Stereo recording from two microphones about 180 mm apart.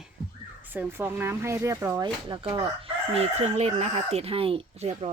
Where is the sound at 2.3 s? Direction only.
30° right (ahead or behind).